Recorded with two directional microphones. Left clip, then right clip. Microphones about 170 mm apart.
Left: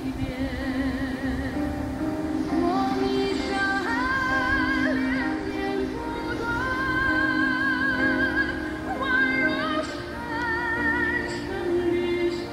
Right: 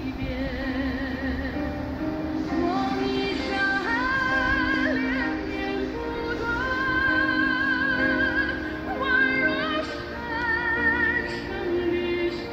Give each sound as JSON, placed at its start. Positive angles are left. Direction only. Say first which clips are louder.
{"t": 2.5, "sound": "music", "louder": "left 1 dB", "side_deg": -25}
{"t": 7.9, "sound": "music", "louder": "even", "side_deg": -25}